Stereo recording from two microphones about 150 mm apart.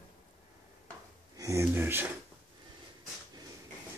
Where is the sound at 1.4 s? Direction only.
20° right (ahead or behind).